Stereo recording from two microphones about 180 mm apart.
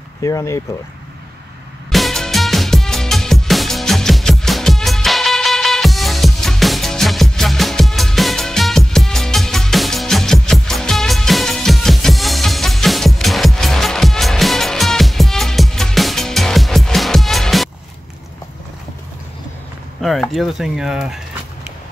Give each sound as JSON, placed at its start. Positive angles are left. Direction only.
{"t": 0.2, "sound": "speech", "side_deg": 20}
{"t": 1.9, "sound": "music", "side_deg": 0}
{"t": 20.0, "sound": "speech", "side_deg": 0}